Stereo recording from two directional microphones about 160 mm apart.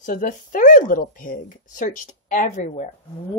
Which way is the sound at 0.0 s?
55° left (ahead or behind).